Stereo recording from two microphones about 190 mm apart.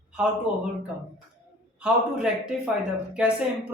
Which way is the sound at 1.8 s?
5° right (ahead or behind).